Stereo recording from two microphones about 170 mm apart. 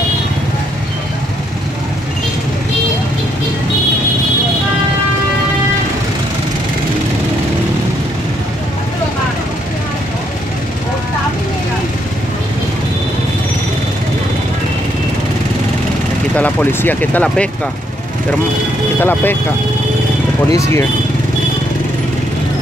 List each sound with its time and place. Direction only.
16.3 s speech: 10° left (ahead or behind)
18.9 s speech: 10° left (ahead or behind)